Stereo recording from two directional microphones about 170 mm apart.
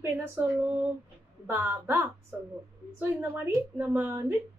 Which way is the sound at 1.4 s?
10° right (ahead or behind).